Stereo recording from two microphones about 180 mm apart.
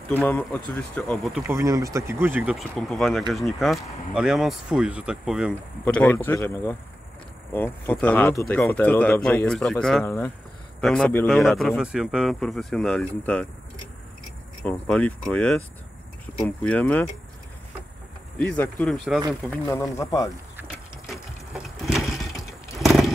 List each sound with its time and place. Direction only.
0.1 s speech: 10° left (ahead or behind)
1.5 s speech: 15° right (ahead or behind)
5.5 s speech: 5° left (ahead or behind)
14.6 s speech: 5° left (ahead or behind)
18.4 s speech: 5° left (ahead or behind)
20.5 s a sound: 5° right (ahead or behind)
21.8 s vehicle: centre (ahead or behind)